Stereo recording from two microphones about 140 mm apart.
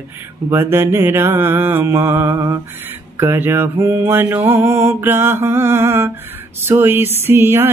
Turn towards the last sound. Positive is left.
turn(degrees=-15)  # may be behind; listen again after turning